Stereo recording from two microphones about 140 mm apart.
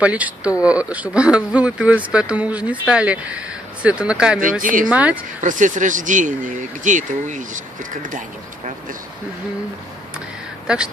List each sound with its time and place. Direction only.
0.0 s speech: 10° right (ahead or behind)
4.4 s speech: 70° right (ahead or behind)
4.8 s speech: 10° right (ahead or behind)
5.4 s speech: 65° right (ahead or behind)
10.7 s speech: 5° right (ahead or behind)